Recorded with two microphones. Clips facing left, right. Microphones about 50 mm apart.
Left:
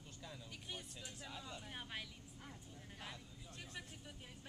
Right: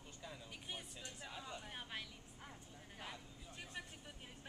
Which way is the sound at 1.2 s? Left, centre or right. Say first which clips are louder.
Right 1 dB; centre.